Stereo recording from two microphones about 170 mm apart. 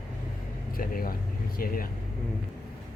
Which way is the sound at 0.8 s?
55° left (ahead or behind).